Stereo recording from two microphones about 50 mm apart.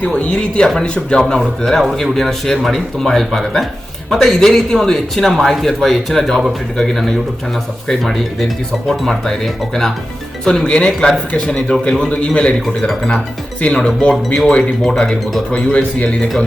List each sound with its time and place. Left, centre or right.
0.0 s a man's voice: left
1.4 s a man's voice: centre; by 12.5 s left
13.6 s a man's voice: left
14.8 s speech: centre
15.5 s a man's voice: left